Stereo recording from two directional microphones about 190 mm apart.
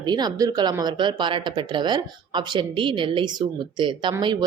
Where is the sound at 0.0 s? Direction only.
20° right (ahead or behind).